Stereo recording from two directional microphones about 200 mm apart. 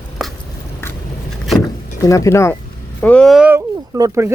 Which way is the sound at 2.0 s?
15° left (ahead or behind).